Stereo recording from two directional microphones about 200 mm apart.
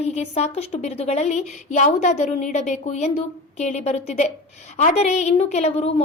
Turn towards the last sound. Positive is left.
turn(degrees=30)  # may be behind; listen again after turning